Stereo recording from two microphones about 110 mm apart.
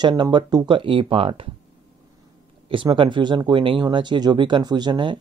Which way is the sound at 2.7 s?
50° right (ahead or behind).